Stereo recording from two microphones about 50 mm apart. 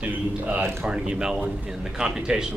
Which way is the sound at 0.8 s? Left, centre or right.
Centre.